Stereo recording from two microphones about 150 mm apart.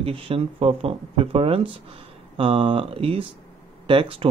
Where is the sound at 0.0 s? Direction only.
40° right (ahead or behind).